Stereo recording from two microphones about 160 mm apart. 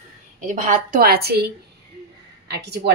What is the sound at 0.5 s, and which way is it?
A woman's voice, 55° right (ahead or behind).